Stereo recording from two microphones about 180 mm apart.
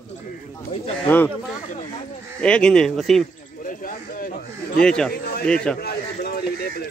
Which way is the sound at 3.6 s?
50° left (ahead or behind).